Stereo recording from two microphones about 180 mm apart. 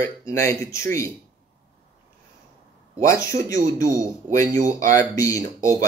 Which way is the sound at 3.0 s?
15° left (ahead or behind).